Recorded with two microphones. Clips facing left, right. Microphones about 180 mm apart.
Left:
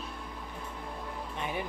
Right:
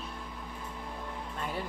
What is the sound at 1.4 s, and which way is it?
Speech, 15° left (ahead or behind).